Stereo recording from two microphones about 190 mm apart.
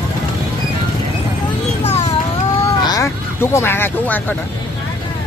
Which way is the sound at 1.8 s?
35° left (ahead or behind).